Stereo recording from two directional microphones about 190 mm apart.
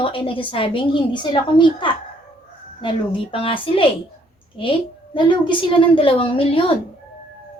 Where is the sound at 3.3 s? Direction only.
30° left (ahead or behind).